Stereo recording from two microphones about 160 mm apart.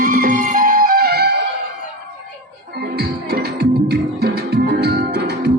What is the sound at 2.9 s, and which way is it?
Music, 85° right.